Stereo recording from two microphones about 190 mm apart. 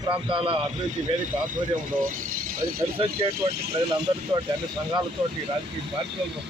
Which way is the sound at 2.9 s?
30° right (ahead or behind).